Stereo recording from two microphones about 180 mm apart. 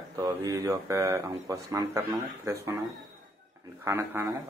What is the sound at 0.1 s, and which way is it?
Speech, 20° right (ahead or behind).